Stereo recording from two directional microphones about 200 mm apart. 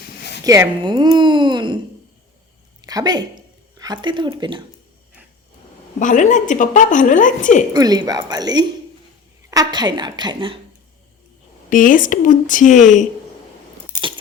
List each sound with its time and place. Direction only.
0.4 s speech: 15° right (ahead or behind)
2.8 s a woman's voice: 20° right (ahead or behind)
6.0 s a woman's voice: 40° left (ahead or behind)
7.7 s speech: 20° right (ahead or behind)
11.7 s a woman's voice: 40° left (ahead or behind)